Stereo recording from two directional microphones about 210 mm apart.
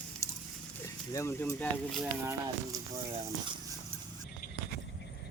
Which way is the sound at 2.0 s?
10° right (ahead or behind).